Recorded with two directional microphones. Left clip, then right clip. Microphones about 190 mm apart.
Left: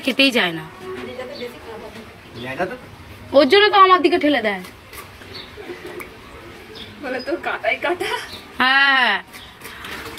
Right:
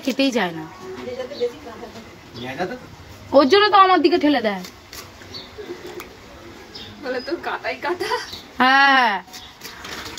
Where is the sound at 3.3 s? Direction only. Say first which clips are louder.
Left 1 dB; 35° right (ahead or behind).